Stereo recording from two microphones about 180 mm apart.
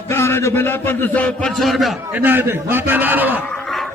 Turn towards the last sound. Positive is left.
turn(degrees=0)  # may be behind; listen again after turning